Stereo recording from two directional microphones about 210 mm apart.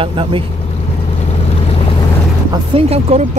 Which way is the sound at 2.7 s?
30° right (ahead or behind).